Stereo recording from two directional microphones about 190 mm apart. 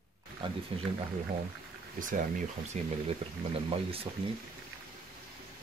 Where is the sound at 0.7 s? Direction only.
30° right (ahead or behind).